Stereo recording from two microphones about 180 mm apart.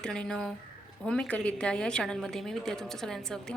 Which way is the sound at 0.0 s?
5° left (ahead or behind).